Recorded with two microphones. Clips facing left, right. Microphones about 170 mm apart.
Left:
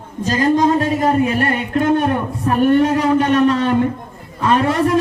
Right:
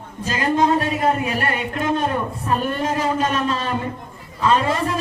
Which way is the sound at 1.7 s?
60° left (ahead or behind).